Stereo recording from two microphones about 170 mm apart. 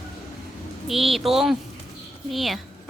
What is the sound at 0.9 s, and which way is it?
A woman's voice, centre (ahead or behind).